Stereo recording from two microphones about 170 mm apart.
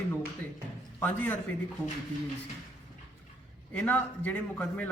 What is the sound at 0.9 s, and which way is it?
Speech, 10° left (ahead or behind).